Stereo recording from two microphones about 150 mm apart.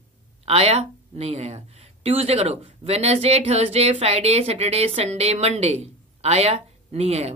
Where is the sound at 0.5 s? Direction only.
45° right (ahead or behind).